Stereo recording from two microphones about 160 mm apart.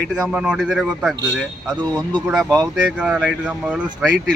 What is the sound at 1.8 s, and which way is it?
Speech, 25° right (ahead or behind).